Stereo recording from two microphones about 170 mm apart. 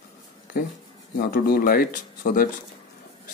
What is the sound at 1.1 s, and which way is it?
Speech, 65° left (ahead or behind).